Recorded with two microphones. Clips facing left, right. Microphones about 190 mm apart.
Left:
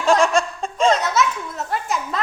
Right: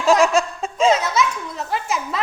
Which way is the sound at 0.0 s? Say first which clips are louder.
Right 1 dB; 5° right (ahead or behind).